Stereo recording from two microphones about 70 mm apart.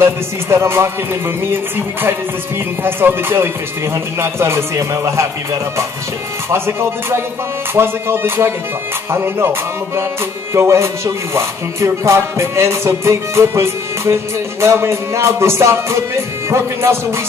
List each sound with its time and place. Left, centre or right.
0.0 s music: right